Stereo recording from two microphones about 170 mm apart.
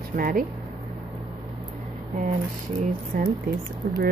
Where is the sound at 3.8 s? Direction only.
60° right (ahead or behind).